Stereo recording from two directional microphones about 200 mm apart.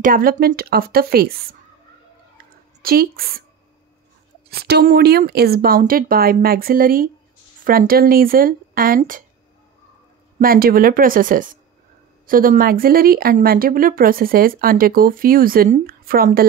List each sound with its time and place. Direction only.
0.0 s a woman's voice: 45° right (ahead or behind)
2.3 s a sound: 50° right (ahead or behind)
4.5 s a woman's voice: 50° right (ahead or behind)
10.4 s a woman's voice: 45° right (ahead or behind)